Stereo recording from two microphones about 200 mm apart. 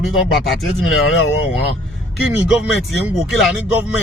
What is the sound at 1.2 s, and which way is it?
Speech, 75° left (ahead or behind).